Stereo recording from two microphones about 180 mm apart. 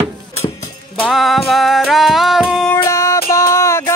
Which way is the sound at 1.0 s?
Centre (ahead or behind).